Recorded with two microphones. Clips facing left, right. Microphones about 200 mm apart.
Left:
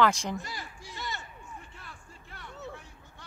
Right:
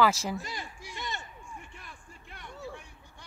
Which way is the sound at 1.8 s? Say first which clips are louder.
Even; 15° right (ahead or behind).